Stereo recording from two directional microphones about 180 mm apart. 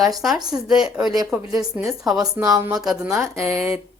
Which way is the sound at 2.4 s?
20° right (ahead or behind).